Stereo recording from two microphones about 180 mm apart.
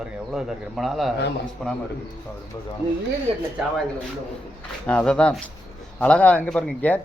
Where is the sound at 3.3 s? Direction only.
35° right (ahead or behind).